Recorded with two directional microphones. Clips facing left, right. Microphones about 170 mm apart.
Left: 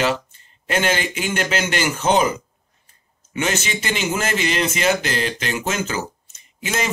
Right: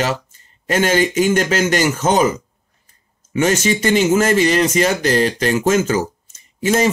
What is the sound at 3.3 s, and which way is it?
Speech, 45° right (ahead or behind).